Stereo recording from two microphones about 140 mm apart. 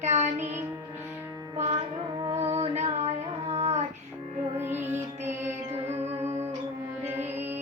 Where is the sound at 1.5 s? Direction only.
55° right (ahead or behind).